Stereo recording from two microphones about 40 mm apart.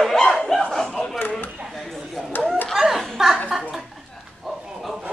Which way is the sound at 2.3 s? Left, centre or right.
Left.